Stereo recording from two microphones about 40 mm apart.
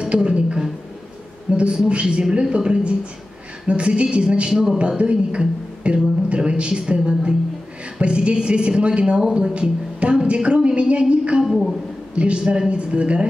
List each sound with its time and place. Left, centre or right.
0.0 s a sound: right
1.9 s a woman's voice: right
4.5 s speech: centre
4.7 s a woman's voice: right
11.4 s a woman's voice: centre
12.4 s speech: centre
12.6 s a woman's voice: right